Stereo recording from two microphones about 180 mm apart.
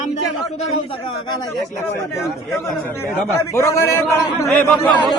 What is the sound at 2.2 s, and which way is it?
A man's voice, 15° left (ahead or behind).